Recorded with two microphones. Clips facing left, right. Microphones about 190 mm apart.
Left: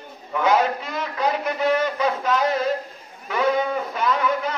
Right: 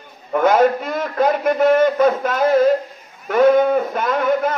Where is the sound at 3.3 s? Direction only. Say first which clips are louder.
Right 9 dB; 50° right (ahead or behind).